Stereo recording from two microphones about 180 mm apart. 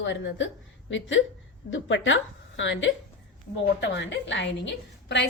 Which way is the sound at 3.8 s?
80° left.